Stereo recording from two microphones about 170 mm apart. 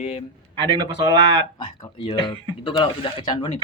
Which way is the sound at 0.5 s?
30° right (ahead or behind).